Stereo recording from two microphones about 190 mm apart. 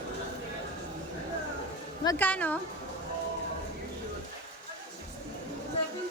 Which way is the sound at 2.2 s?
10° left (ahead or behind).